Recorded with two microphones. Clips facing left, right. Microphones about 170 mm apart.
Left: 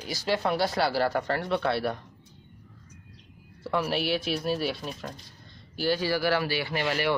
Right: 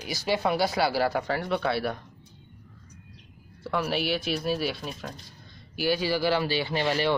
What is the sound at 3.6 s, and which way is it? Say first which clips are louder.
Speech: even; centre (ahead or behind).